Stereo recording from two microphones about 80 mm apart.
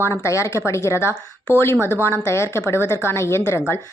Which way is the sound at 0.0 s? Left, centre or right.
Left.